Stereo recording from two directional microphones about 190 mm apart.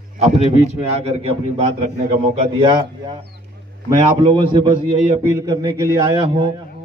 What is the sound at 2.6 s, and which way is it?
A man's voice, 25° right (ahead or behind).